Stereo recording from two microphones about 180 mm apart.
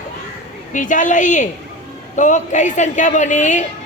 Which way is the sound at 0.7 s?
45° left (ahead or behind).